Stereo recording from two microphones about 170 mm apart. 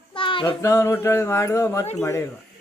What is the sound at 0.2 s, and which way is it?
Child singing, 30° left (ahead or behind).